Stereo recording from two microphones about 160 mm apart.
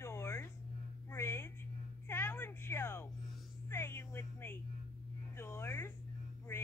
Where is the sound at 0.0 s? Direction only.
15° left (ahead or behind).